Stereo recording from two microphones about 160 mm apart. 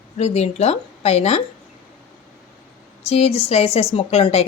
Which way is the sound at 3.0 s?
40° left (ahead or behind).